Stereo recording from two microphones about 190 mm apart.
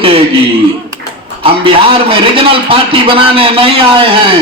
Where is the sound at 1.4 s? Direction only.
30° right (ahead or behind).